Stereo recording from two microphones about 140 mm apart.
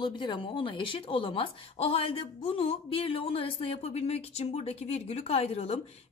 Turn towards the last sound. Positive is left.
turn(degrees=45)  # may be behind; listen again after turning